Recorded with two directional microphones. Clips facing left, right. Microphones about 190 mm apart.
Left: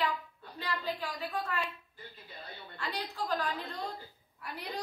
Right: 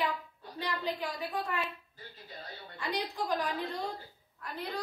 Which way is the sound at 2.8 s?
15° right (ahead or behind).